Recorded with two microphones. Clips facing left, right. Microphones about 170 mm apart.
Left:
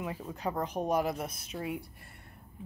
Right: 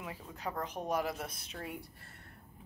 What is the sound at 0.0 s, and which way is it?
Speech, 25° left (ahead or behind).